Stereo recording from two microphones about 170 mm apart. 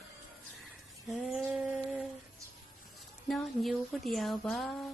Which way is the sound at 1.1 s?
Centre (ahead or behind).